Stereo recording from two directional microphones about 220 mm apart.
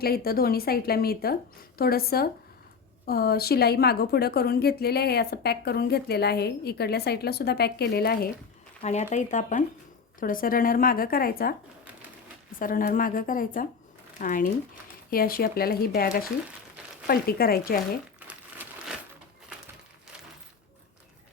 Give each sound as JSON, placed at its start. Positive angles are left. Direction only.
{"t": 0.0, "sound": "a woman's voice", "side_deg": 45}
{"t": 8.8, "sound": "a woman's voice", "side_deg": 30}
{"t": 18.3, "sound": "crumpling", "side_deg": -5}